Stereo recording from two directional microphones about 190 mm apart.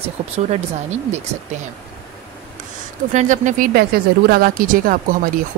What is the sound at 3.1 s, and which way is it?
Speech, 40° right (ahead or behind).